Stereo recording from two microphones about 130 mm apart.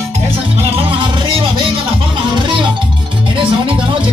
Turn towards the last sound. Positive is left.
turn(degrees=-40)  # may be behind; listen again after turning